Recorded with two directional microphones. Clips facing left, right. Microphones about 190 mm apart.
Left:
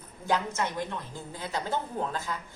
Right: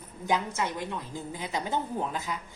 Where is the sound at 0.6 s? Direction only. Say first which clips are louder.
Even; 15° right (ahead or behind).